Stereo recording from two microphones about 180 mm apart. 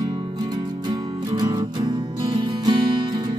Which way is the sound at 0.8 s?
25° right (ahead or behind).